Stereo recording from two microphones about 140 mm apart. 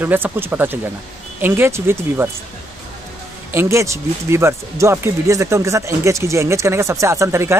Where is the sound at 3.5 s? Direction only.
20° right (ahead or behind).